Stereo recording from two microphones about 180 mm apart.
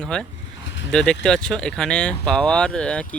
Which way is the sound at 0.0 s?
5° left (ahead or behind).